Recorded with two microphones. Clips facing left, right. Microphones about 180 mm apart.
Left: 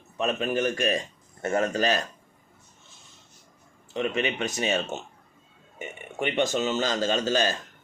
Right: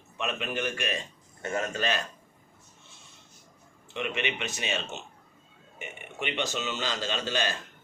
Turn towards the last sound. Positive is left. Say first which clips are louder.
# left 6 dB
turn(degrees=40)  # may be behind; listen again after turning